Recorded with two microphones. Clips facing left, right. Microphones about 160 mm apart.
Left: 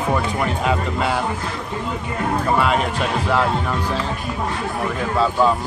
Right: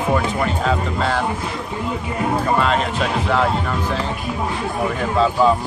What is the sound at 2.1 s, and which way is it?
Speech, 5° right (ahead or behind).